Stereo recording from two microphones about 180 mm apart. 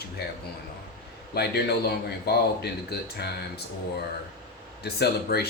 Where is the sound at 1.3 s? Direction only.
60° left (ahead or behind).